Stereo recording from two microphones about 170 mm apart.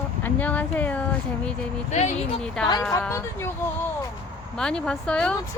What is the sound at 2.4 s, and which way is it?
Speech, 5° left (ahead or behind).